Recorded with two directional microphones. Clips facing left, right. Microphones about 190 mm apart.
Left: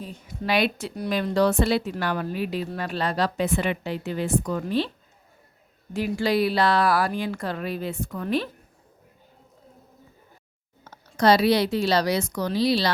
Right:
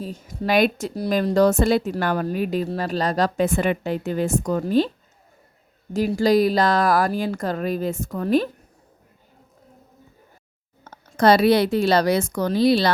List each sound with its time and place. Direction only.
0.0 s a woman's voice: 45° right (ahead or behind)
5.9 s a woman's voice: 40° right (ahead or behind)
10.8 s a woman's voice: 50° right (ahead or behind)